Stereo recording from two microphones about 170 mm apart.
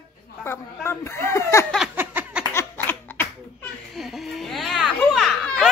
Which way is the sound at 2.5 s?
10° left (ahead or behind).